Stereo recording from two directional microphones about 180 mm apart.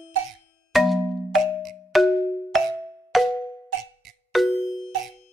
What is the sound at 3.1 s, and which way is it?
Music, centre (ahead or behind).